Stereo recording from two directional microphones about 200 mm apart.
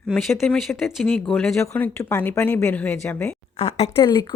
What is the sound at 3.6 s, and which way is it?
Speech, 30° left (ahead or behind).